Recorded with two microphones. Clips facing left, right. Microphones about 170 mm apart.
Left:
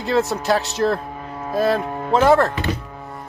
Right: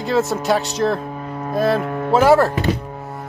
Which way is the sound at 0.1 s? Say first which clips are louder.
Right 1 dB; centre (ahead or behind).